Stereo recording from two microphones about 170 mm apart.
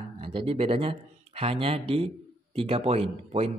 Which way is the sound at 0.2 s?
35° right (ahead or behind).